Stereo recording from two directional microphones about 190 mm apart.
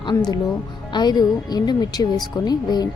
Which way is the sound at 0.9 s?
20° left (ahead or behind).